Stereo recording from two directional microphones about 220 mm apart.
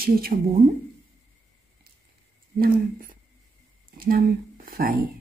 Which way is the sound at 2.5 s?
40° right (ahead or behind).